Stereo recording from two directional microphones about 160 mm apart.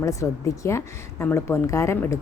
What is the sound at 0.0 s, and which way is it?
A woman's voice, 20° left (ahead or behind).